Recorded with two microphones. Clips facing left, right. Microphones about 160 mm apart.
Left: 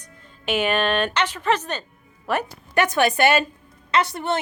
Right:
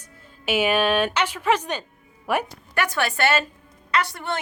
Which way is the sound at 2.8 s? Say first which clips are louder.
Left 5 dB; 20° left (ahead or behind).